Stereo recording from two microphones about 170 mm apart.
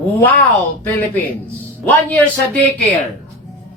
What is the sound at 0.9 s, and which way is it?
A man's voice, 10° left (ahead or behind).